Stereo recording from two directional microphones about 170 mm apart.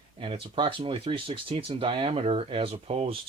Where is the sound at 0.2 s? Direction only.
30° right (ahead or behind).